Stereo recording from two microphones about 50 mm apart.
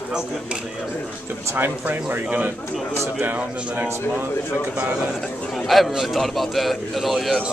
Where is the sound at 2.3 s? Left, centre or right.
Right.